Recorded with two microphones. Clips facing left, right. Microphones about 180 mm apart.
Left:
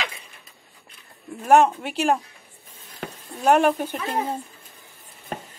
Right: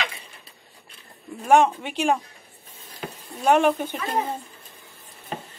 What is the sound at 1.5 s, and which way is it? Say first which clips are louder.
Speech: left 1 dB; 5° left (ahead or behind).